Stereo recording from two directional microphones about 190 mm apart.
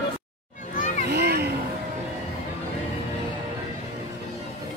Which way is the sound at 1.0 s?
55° right (ahead or behind).